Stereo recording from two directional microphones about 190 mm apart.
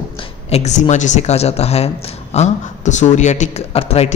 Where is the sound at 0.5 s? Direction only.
35° left (ahead or behind).